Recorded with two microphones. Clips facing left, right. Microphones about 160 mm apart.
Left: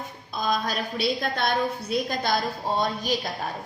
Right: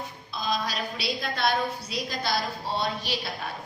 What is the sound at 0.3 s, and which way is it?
A woman's voice, 50° left (ahead or behind).